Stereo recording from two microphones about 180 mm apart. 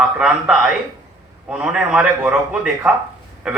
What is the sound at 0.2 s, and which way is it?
A man's voice, 5° right (ahead or behind).